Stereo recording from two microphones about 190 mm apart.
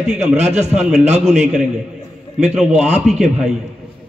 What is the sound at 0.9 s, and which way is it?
Speech, 35° right (ahead or behind).